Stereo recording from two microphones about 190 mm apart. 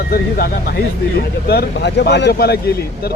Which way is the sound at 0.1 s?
50° left (ahead or behind).